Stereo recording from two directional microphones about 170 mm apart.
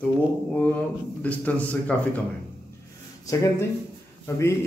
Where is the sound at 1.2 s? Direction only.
10° left (ahead or behind).